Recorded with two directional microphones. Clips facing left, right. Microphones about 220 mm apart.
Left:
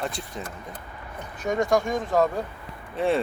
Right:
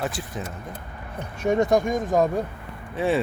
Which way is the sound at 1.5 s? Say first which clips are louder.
Right 3 dB; 20° right (ahead or behind).